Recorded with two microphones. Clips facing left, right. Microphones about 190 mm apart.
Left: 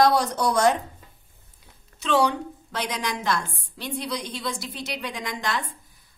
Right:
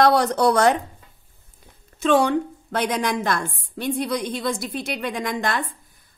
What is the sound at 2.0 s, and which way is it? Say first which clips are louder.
A woman's voice: right 4 dB; 50° right (ahead or behind).